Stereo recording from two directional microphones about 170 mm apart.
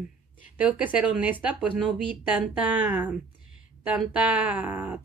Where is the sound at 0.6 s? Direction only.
10° right (ahead or behind).